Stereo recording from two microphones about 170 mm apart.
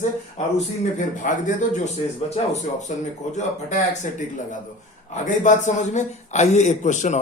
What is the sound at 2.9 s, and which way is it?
A man's voice, 45° left (ahead or behind).